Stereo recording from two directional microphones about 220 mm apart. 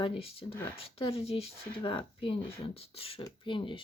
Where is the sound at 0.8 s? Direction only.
25° left (ahead or behind).